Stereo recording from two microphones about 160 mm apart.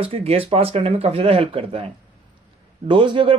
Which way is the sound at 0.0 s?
35° right (ahead or behind).